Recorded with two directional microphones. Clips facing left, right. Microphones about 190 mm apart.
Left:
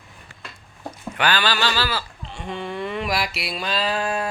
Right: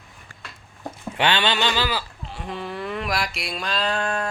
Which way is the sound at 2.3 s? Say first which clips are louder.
Left 2 dB; 5° right (ahead or behind).